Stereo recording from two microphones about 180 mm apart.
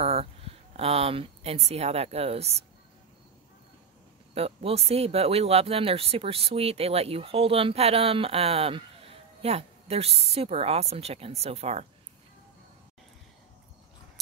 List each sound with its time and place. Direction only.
0.0 s speech: 35° right (ahead or behind)
4.3 s speech: 35° right (ahead or behind)